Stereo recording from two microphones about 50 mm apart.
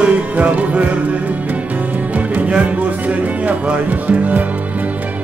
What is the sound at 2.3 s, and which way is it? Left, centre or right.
Music, right.